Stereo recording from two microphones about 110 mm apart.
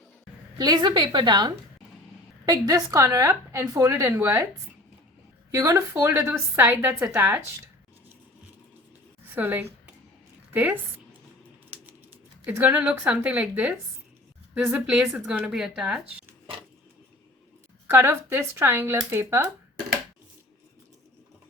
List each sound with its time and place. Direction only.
0.6 s a woman's voice: 40° right (ahead or behind)
2.5 s speech: 30° right (ahead or behind)
5.5 s speech: 25° right (ahead or behind)
9.3 s a woman's voice: 20° right (ahead or behind)
12.5 s a woman's voice: 15° right (ahead or behind)
17.8 s speech: 20° right (ahead or behind)